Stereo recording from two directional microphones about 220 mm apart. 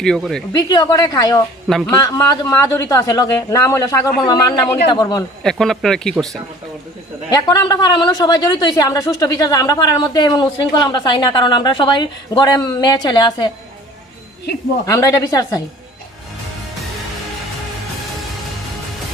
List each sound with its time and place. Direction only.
0.0 s speech: centre (ahead or behind)
0.5 s a woman's voice: 15° left (ahead or behind)
5.4 s speech: centre (ahead or behind)
7.3 s a woman's voice: 15° left (ahead or behind)
14.8 s a woman's voice: 15° left (ahead or behind)